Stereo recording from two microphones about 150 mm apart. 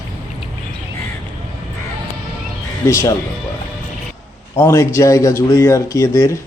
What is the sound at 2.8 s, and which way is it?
Speech, 20° left (ahead or behind).